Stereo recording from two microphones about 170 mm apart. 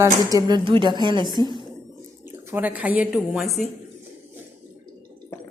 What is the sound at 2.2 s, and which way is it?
Speech, 10° right (ahead or behind).